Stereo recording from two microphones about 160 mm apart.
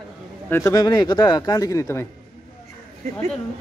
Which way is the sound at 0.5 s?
15° left (ahead or behind).